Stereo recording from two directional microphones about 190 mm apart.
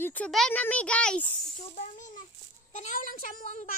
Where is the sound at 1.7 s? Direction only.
40° left (ahead or behind).